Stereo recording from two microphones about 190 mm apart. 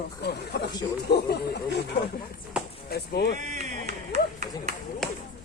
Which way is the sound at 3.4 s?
40° right (ahead or behind).